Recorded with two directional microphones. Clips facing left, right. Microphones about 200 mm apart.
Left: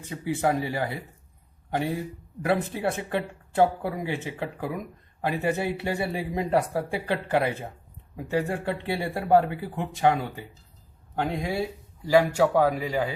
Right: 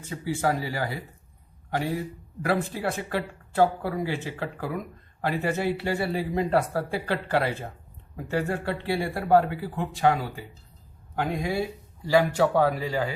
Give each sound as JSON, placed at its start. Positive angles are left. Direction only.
{"t": 0.0, "sound": "speech", "side_deg": 20}
{"t": 12.0, "sound": "speech", "side_deg": 15}